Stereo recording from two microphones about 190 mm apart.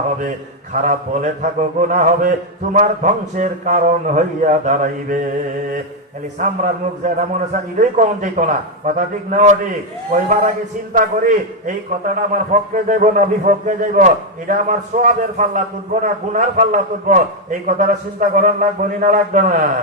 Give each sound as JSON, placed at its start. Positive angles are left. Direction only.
{"t": 0.2, "sound": "a man's voice", "side_deg": -40}
{"t": 6.4, "sound": "a man's voice", "side_deg": -40}
{"t": 11.6, "sound": "a man's voice", "side_deg": -45}